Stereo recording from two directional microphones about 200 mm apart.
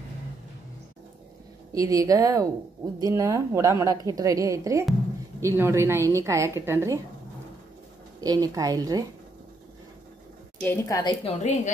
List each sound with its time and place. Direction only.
1.7 s a woman's voice: 15° right (ahead or behind)
8.2 s a woman's voice: 20° right (ahead or behind)
10.6 s a woman's voice: 10° left (ahead or behind)
11.2 s a woman's voice: 35° left (ahead or behind)